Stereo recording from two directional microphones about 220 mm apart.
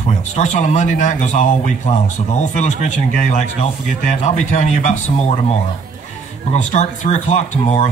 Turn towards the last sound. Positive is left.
turn(degrees=30)  # may be behind; listen again after turning